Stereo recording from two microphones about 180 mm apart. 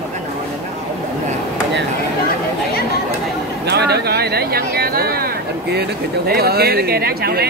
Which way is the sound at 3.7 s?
65° right (ahead or behind).